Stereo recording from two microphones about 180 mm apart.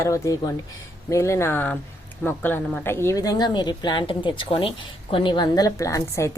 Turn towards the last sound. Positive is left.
turn(degrees=15)  # may be behind; listen again after turning